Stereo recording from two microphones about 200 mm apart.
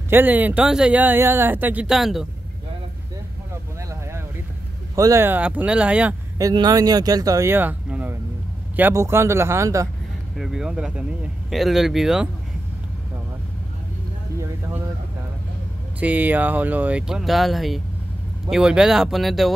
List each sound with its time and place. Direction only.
0.1 s speech: 10° right (ahead or behind)
4.9 s speech: 15° right (ahead or behind)
6.3 s speech: 20° right (ahead or behind)
10.3 s speech: centre (ahead or behind)
14.4 s a sound: 10° right (ahead or behind)
16.0 s speech: 5° right (ahead or behind)